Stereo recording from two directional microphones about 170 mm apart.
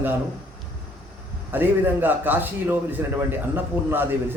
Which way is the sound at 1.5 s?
10° right (ahead or behind).